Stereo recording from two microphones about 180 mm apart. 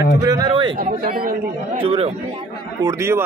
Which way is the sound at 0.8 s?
50° right (ahead or behind).